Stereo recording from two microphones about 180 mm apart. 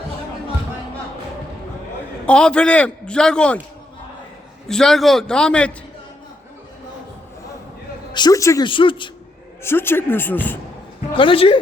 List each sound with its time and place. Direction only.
2.2 s a man's voice: 5° left (ahead or behind)
4.7 s a man's voice: centre (ahead or behind)
8.1 s speech: 20° left (ahead or behind)
9.6 s speech: 10° left (ahead or behind)
11.1 s speech: 30° left (ahead or behind)